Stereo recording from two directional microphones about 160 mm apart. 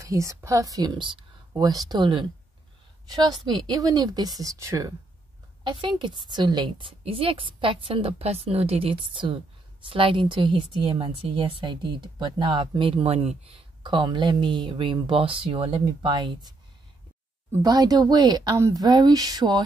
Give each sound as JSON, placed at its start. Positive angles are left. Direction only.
{"t": 0.0, "sound": "a woman's voice", "side_deg": -20}
{"t": 13.8, "sound": "a woman's voice", "side_deg": -30}
{"t": 17.6, "sound": "a woman's voice", "side_deg": -25}